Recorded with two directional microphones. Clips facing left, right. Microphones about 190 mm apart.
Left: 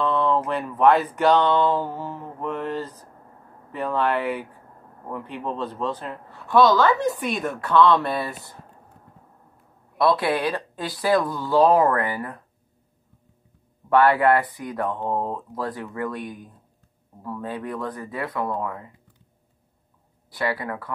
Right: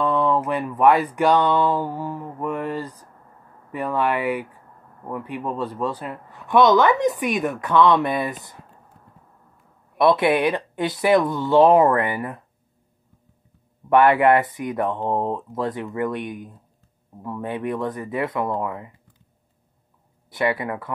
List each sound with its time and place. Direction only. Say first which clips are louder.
0.0 s a man's voice: right 1 dB; 10° right (ahead or behind)
9.9 s speech: right 4 dB; 20° right (ahead or behind)
13.8 s speech: right 2 dB; 20° right (ahead or behind)
20.2 s speech: right 4 dB; 20° right (ahead or behind)